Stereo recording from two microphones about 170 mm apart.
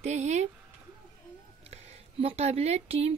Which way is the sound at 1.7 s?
35° right (ahead or behind).